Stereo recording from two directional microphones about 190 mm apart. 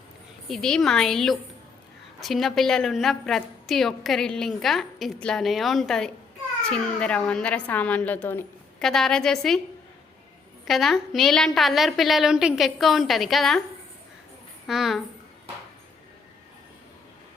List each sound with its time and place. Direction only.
0.4 s a woman's voice: centre (ahead or behind)
10.7 s a woman's voice: centre (ahead or behind)
14.7 s a woman's voice: centre (ahead or behind)